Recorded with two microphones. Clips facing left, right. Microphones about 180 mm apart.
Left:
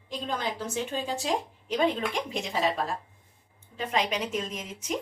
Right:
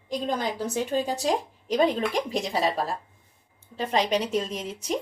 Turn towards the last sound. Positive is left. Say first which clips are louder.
# right 4 dB
turn(degrees=-35)  # may be behind; listen again after turning